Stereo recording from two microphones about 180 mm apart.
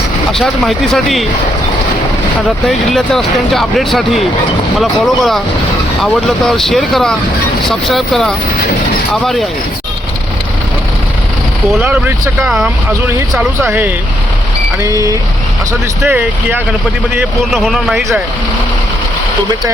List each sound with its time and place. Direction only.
0.3 s speech: centre (ahead or behind)
2.6 s speech: centre (ahead or behind)
11.8 s speech: 10° right (ahead or behind)